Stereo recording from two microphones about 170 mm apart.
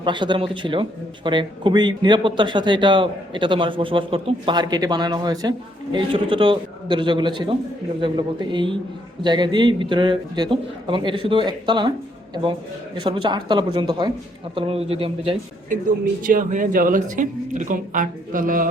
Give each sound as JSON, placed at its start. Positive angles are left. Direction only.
{"t": 0.0, "sound": "a man's voice", "side_deg": -25}
{"t": 16.2, "sound": "speech", "side_deg": -50}